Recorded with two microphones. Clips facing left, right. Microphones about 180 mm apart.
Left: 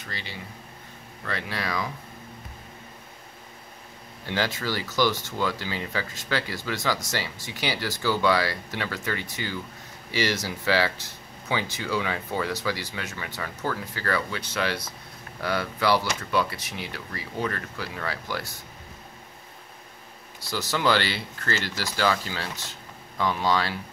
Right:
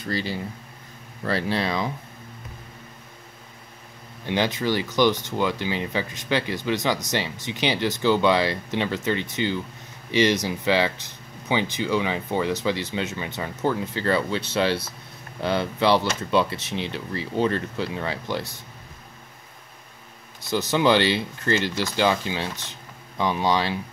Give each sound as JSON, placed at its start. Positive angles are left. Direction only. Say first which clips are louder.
{"t": 0.0, "sound": "speech", "louder": "right 11 dB", "side_deg": -35}
{"t": 4.3, "sound": "speech", "louder": "right 5 dB", "side_deg": -20}
{"t": 20.3, "sound": "speech", "louder": "right 6 dB", "side_deg": -20}